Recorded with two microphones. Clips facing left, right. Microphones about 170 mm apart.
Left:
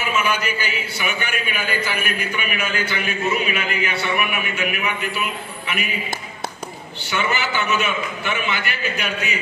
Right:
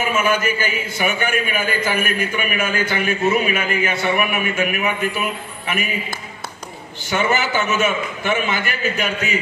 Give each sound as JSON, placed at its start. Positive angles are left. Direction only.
{"t": 0.1, "sound": "a man's voice", "side_deg": -45}
{"t": 7.1, "sound": "a man's voice", "side_deg": -45}